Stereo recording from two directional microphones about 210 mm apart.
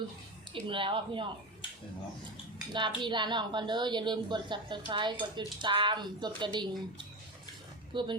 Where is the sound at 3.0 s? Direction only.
20° right (ahead or behind).